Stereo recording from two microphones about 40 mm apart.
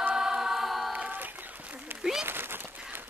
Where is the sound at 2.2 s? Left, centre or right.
Right.